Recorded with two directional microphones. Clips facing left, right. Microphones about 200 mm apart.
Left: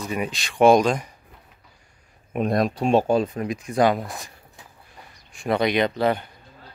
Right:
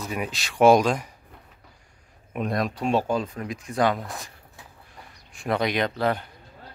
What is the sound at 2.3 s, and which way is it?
Speech, 25° left (ahead or behind).